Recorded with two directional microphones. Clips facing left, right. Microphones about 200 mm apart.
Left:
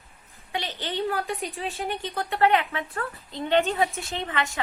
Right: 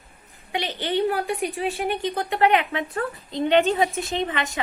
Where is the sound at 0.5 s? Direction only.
20° right (ahead or behind).